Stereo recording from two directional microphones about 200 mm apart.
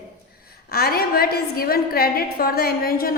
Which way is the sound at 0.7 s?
50° left (ahead or behind).